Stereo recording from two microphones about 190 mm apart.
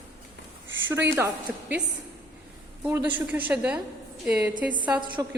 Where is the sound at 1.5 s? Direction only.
Centre (ahead or behind).